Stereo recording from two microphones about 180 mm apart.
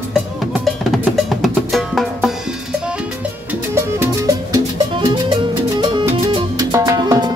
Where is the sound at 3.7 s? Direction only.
15° right (ahead or behind).